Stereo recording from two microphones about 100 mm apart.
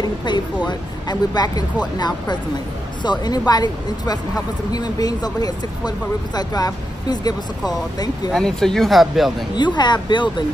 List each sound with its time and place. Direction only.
0.0 s speech: 45° left (ahead or behind)
8.3 s speech: 5° left (ahead or behind)
9.6 s speech: 45° left (ahead or behind)